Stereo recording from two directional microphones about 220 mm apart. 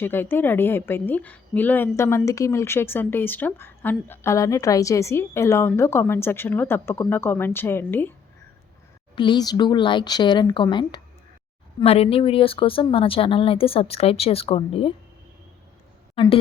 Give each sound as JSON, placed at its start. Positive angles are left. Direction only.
{"t": 0.0, "sound": "a woman's voice", "side_deg": 10}
{"t": 9.1, "sound": "speech", "side_deg": 20}
{"t": 16.1, "sound": "speech", "side_deg": 25}